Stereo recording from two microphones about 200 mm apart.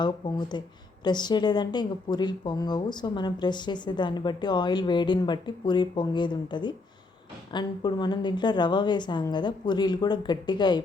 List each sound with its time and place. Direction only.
0.0 s speech: 20° left (ahead or behind)